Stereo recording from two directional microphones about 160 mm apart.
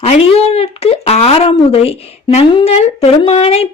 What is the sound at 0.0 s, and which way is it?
Speech, 40° left (ahead or behind).